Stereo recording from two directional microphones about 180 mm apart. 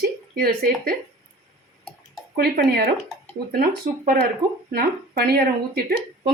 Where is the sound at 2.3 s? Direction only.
60° right (ahead or behind).